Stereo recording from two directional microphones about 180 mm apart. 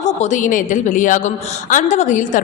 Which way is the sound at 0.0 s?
40° left (ahead or behind).